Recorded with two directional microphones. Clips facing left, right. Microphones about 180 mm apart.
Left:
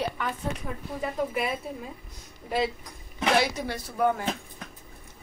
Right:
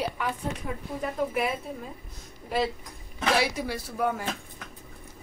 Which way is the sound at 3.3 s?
5° right (ahead or behind).